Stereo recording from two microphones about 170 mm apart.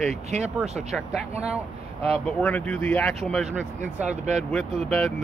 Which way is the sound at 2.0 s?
35° right (ahead or behind).